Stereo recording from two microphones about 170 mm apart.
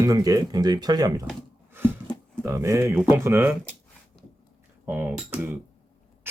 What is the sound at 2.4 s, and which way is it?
Speech, 15° right (ahead or behind).